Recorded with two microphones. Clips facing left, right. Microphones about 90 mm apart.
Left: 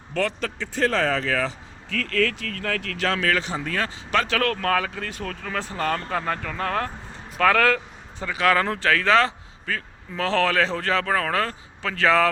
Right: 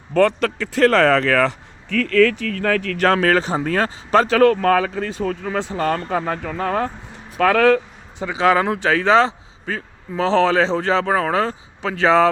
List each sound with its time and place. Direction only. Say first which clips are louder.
0.1 s speech: right 10 dB; 50° right (ahead or behind)
0.3 s speech: right 8 dB; 90° right; by 2.5 s 60° right (ahead or behind)
3.0 s speech: right 7 dB; 45° right (ahead or behind); by 12.3 s 25° right (ahead or behind)